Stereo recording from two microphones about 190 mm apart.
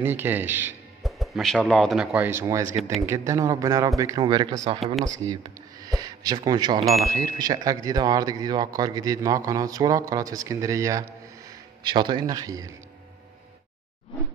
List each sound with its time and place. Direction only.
0.0 s a man's voice: 10° right (ahead or behind)
1.0 s a man's voice: centre (ahead or behind); by 12.7 s 20° right (ahead or behind)